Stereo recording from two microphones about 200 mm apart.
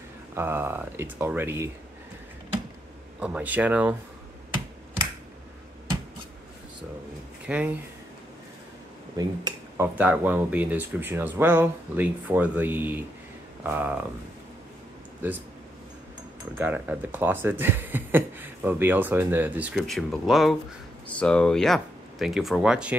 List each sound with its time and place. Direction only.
0.4 s speech: 10° right (ahead or behind)
3.2 s speech: 5° right (ahead or behind)
7.4 s speech: 5° right (ahead or behind)
9.2 s speech: 20° right (ahead or behind)
9.9 s speech: 10° right (ahead or behind)
16.5 s speech: 10° right (ahead or behind)